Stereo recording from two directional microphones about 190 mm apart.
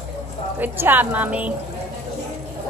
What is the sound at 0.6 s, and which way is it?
Speech, 10° right (ahead or behind).